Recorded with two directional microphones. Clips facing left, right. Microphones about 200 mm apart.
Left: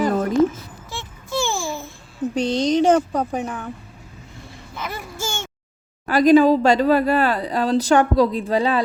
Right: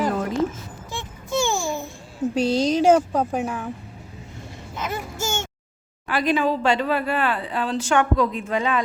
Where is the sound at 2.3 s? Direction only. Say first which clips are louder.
Left 1 dB; 5° right (ahead or behind).